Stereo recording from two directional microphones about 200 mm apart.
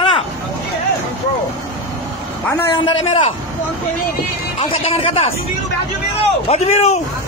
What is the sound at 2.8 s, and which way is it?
Speech, 25° left (ahead or behind).